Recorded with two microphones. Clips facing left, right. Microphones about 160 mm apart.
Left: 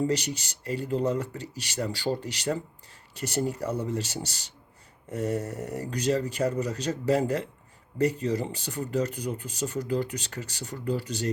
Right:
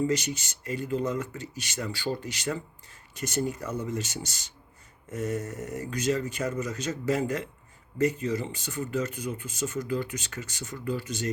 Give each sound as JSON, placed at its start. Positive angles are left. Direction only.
{"t": 0.1, "sound": "speech", "side_deg": 35}